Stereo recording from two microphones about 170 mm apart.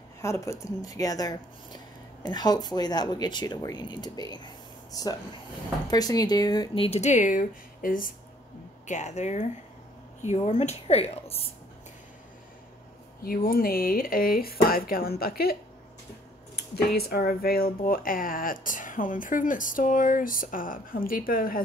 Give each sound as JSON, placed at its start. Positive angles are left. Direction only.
{"t": 0.2, "sound": "speech", "side_deg": 15}
{"t": 8.8, "sound": "speech", "side_deg": 45}
{"t": 13.2, "sound": "speech", "side_deg": 60}
{"t": 16.5, "sound": "speech", "side_deg": 70}